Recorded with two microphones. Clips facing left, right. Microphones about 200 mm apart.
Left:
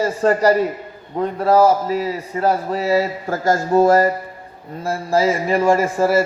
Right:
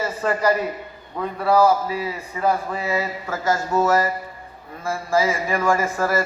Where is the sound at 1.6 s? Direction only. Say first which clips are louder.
Left 3 dB; 40° left (ahead or behind).